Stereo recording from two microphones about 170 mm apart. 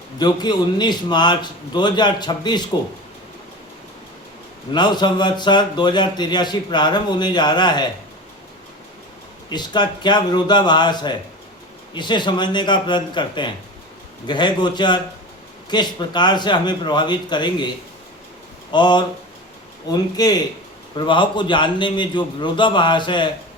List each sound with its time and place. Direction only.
0.2 s a man's voice: 25° left (ahead or behind)
4.7 s a man's voice: 25° left (ahead or behind)
9.5 s a man's voice: 25° left (ahead or behind)
18.7 s a man's voice: 25° left (ahead or behind)